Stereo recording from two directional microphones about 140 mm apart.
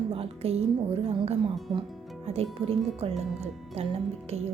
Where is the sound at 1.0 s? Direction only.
45° right (ahead or behind).